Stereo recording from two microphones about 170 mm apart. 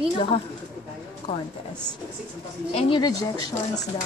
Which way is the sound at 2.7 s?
25° left (ahead or behind).